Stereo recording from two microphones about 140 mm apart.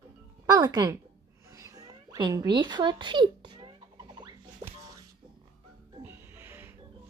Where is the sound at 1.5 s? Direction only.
25° right (ahead or behind).